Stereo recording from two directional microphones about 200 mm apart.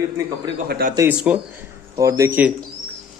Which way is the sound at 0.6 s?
50° right (ahead or behind).